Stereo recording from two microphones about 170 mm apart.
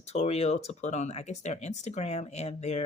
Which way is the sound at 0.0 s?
40° left (ahead or behind).